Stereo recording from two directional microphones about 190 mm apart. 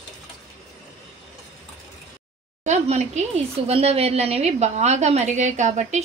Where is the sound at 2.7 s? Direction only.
35° right (ahead or behind).